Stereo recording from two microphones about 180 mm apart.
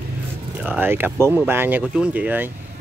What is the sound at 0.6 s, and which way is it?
Speech, 10° right (ahead or behind).